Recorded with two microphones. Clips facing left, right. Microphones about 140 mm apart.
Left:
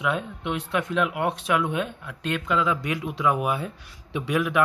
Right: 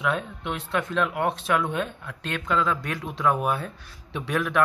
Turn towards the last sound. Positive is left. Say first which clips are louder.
# left 2 dB
turn(degrees=10)  # may be behind; listen again after turning